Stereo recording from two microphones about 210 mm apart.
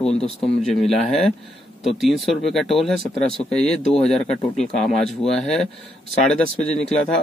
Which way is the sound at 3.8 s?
30° left (ahead or behind).